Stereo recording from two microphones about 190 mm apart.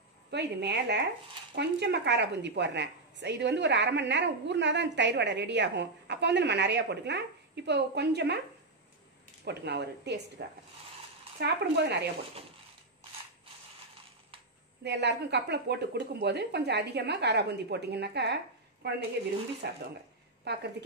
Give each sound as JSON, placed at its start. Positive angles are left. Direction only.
{"t": 0.3, "sound": "a woman's voice", "side_deg": -65}
{"t": 9.4, "sound": "a woman's voice", "side_deg": -60}
{"t": 11.3, "sound": "a woman's voice", "side_deg": -60}
{"t": 14.8, "sound": "a woman's voice", "side_deg": -65}